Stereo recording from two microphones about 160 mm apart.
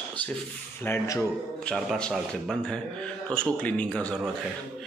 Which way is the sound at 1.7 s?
5° left (ahead or behind).